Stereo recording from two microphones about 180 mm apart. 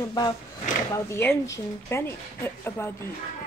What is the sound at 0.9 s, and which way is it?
Speech, 15° left (ahead or behind).